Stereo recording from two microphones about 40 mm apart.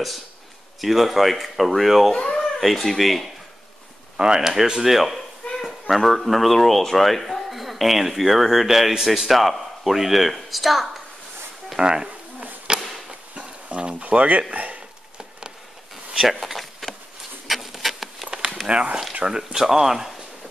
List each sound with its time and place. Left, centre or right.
0.7 s speech: centre
2.1 s a sound: left
2.6 s speech: centre
4.2 s speech: centre
4.8 s speech: centre
11.8 s speech: centre
12.7 s chop: right
13.3 s a sound: right
14.0 s speech: right
16.3 s a sound: centre
17.5 s patter: centre
18.7 s speech: right
19.2 s speech: centre